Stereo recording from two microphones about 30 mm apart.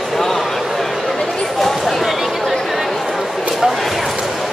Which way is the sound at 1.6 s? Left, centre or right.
Centre.